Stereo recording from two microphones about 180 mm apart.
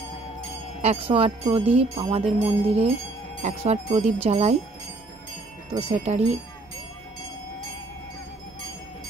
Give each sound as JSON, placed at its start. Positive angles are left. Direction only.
{"t": 0.8, "sound": "speech", "side_deg": -30}
{"t": 5.7, "sound": "speech", "side_deg": -35}